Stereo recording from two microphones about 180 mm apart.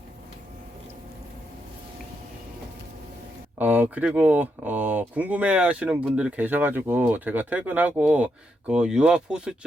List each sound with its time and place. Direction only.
3.6 s speech: 10° right (ahead or behind)